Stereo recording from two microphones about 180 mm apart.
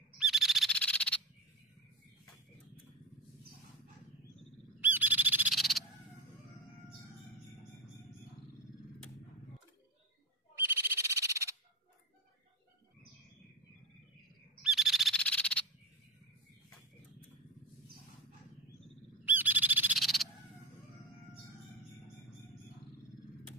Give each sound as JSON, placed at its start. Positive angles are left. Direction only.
{"t": 0.2, "sound": "frog", "side_deg": 0}
{"t": 4.7, "sound": "owl", "side_deg": -10}
{"t": 10.6, "sound": "owl", "side_deg": -15}
{"t": 14.6, "sound": "owl", "side_deg": 0}
{"t": 19.2, "sound": "owl", "side_deg": -10}
{"t": 20.0, "sound": "owl", "side_deg": 0}